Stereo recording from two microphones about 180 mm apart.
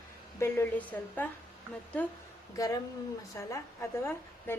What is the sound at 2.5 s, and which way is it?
A woman's voice, 20° left (ahead or behind).